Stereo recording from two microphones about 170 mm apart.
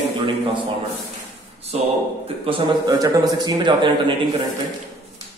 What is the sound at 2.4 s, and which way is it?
Speech, 30° right (ahead or behind).